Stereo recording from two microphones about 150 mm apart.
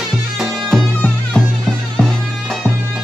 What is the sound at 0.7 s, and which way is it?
Music, 5° left (ahead or behind).